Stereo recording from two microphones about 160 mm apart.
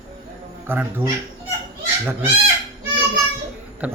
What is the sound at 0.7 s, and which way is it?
Speech, 10° right (ahead or behind).